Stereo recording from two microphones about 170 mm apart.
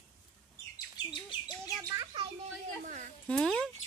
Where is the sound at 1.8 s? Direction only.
25° right (ahead or behind).